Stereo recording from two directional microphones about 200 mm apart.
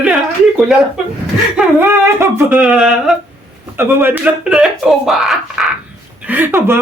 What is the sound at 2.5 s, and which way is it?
Speech, 5° right (ahead or behind).